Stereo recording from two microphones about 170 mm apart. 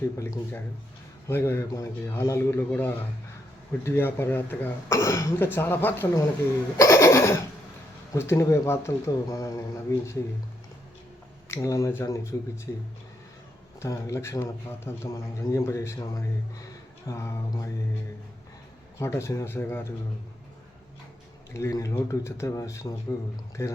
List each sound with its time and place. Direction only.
0.2 s a man's voice: 15° left (ahead or behind)
11.4 s a man's voice: 20° left (ahead or behind)
18.9 s a man's voice: 15° left (ahead or behind)
21.5 s a man's voice: 20° left (ahead or behind)